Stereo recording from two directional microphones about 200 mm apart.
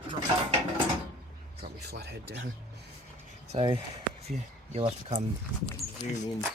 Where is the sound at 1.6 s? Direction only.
55° right (ahead or behind).